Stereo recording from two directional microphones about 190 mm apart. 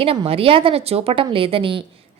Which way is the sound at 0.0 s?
30° right (ahead or behind).